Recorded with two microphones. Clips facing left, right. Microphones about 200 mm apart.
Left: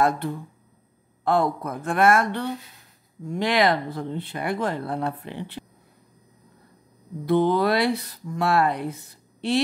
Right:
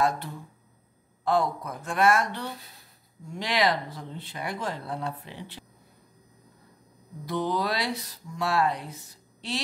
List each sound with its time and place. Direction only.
1.2 s speech: 55° left (ahead or behind)
7.2 s speech: 60° left (ahead or behind)